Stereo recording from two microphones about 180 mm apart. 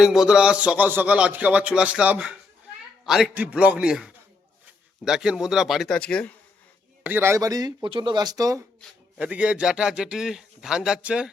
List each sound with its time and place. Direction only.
0.0 s a man's voice: 5° right (ahead or behind)
7.0 s speech: 10° right (ahead or behind)
9.1 s a man's voice: 5° right (ahead or behind)